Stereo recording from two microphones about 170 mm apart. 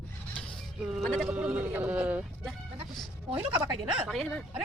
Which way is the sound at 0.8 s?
Centre (ahead or behind).